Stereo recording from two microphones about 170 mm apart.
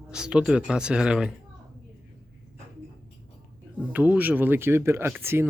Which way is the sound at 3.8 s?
10° right (ahead or behind).